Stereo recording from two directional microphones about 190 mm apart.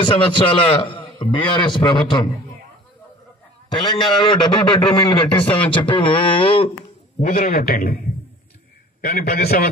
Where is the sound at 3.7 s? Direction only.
25° left (ahead or behind).